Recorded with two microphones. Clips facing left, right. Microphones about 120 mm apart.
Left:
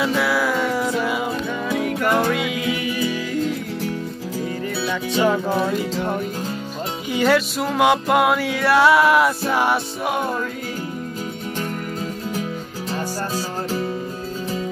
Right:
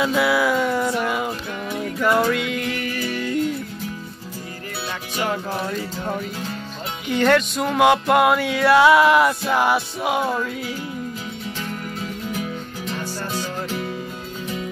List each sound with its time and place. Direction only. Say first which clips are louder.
0.0 s music: right 1 dB; centre (ahead or behind)
1.7 s music: even; 80° left; by 2.3 s 55° left (ahead or behind)
2.3 s music: left 2 dB; 5° left (ahead or behind)
7.1 s music: right 1 dB; 10° left (ahead or behind)
12.9 s music: left 3 dB; 35° left (ahead or behind)